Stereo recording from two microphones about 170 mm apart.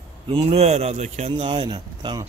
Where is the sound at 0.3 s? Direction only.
35° right (ahead or behind).